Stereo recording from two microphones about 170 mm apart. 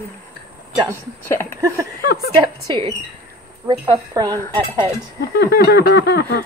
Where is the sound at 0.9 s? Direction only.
15° left (ahead or behind).